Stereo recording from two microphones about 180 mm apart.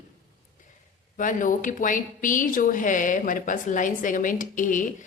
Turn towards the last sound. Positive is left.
turn(degrees=45)  # may be behind; listen again after turning